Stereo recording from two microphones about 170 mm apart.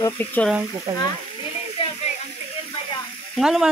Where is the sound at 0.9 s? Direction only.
30° right (ahead or behind).